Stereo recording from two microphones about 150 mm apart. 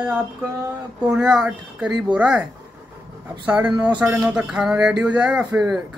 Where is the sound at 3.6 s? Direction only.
30° right (ahead or behind).